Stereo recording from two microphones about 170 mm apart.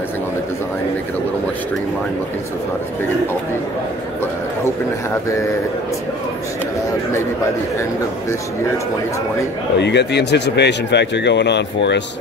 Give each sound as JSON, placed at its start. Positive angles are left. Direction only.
{"t": 9.8, "sound": "speech", "side_deg": 90}